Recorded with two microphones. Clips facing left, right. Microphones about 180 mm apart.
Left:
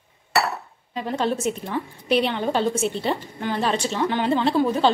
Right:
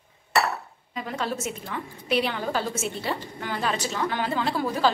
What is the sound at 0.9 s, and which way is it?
A woman's voice, 30° left (ahead or behind).